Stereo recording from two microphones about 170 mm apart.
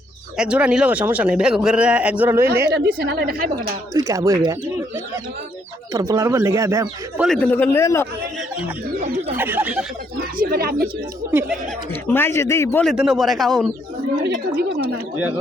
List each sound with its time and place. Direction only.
0.3 s a man's voice: 5° right (ahead or behind)
2.6 s a woman's voice: 75° right (ahead or behind)
3.6 s speech: 20° right (ahead or behind)
5.9 s a man's voice: 20° right (ahead or behind)
7.3 s a man's voice: 10° left (ahead or behind)
8.4 s a man's voice: 5° right (ahead or behind)
10.2 s speech: 60° right (ahead or behind)
11.3 s a man's voice: 10° right (ahead or behind)
12.0 s a man's voice: 15° left (ahead or behind)
12.8 s a man's voice: centre (ahead or behind)
14.2 s a woman's voice: 70° right (ahead or behind)